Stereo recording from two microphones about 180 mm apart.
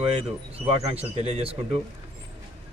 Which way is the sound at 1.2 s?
35° right (ahead or behind).